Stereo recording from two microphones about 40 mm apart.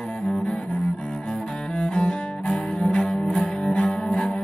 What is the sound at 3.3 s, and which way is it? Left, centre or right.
Music, left.